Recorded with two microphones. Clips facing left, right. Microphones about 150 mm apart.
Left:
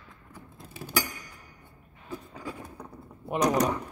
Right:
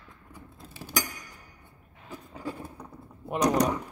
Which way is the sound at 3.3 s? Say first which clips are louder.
Even; 5° left (ahead or behind).